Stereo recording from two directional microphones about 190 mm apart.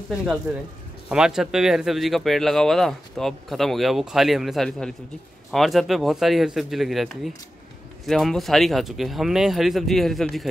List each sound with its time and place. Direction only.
1.0 s speech: 5° right (ahead or behind)